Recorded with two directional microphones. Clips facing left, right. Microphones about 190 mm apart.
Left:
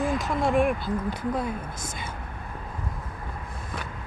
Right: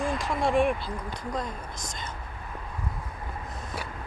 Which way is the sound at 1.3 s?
5° left (ahead or behind).